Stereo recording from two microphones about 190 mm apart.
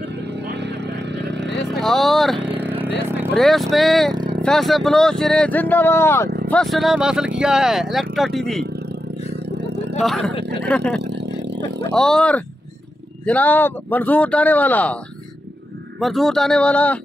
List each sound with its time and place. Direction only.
1.1 s a sound: 60° right (ahead or behind)
1.7 s vehicle: centre (ahead or behind)
2.4 s vehicle: 10° right (ahead or behind)
3.3 s speech: centre (ahead or behind)
4.1 s vehicle: 25° right (ahead or behind)
4.4 s speech: centre (ahead or behind)
6.5 s speech: centre (ahead or behind)
9.9 s speech: centre (ahead or behind)
11.0 s vehicle: 65° right (ahead or behind)
11.9 s speech: 5° left (ahead or behind)
16.0 s speech: centre (ahead or behind)